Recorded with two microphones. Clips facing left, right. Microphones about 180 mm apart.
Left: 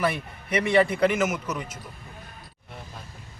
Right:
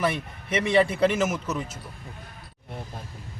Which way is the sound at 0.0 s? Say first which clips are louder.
Even; 25° right (ahead or behind).